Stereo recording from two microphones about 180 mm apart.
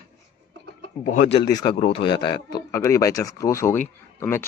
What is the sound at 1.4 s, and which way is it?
A man's voice, 25° left (ahead or behind).